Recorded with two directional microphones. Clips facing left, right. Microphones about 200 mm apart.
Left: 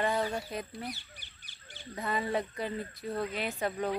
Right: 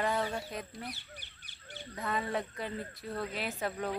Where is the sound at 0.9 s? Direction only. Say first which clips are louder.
Left 2 dB; 60° right (ahead or behind).